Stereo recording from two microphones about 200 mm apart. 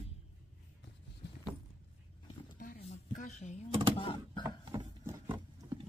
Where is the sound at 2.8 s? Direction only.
35° left (ahead or behind).